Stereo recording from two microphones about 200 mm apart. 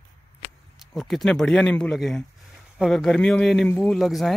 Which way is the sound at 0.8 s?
Centre (ahead or behind).